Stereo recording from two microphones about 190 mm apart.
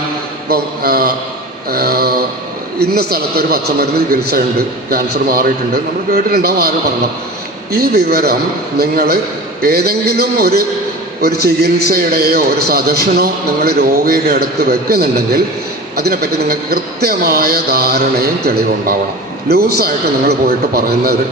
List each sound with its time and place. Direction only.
0.5 s a man's voice: 55° right (ahead or behind)
1.7 s a sound: 55° right (ahead or behind)
2.7 s a man's voice: 55° right (ahead or behind)